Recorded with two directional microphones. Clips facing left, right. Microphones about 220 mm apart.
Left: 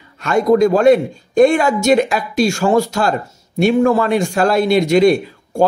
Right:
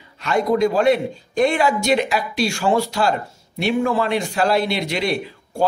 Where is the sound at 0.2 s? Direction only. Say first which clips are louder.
Left 5 dB; 45° left (ahead or behind).